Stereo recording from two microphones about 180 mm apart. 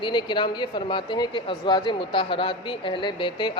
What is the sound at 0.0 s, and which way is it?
Speech, 25° left (ahead or behind).